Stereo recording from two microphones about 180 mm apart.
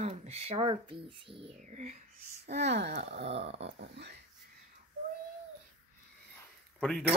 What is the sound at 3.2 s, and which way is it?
Speech, 35° right (ahead or behind).